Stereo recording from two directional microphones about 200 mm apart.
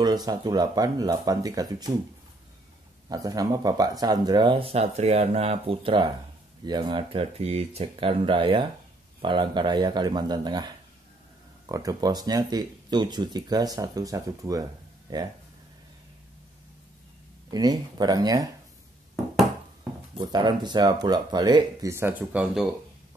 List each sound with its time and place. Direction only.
0.0 s speech: 20° right (ahead or behind)
3.1 s speech: 20° right (ahead or behind)
17.5 s speech: 20° right (ahead or behind)
20.2 s speech: 20° right (ahead or behind); by 22.7 s 5° right (ahead or behind)